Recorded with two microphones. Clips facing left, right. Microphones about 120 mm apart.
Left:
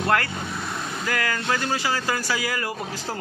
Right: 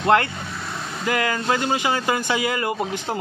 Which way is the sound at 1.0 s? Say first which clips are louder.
Right 5 dB; 20° right (ahead or behind).